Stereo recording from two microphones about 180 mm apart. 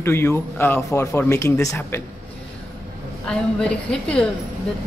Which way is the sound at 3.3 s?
5° left (ahead or behind).